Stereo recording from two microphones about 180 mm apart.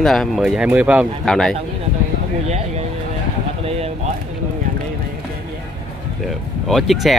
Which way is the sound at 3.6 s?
35° right (ahead or behind).